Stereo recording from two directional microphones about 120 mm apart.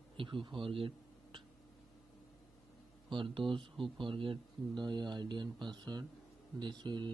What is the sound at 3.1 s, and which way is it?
Speech, 45° right (ahead or behind).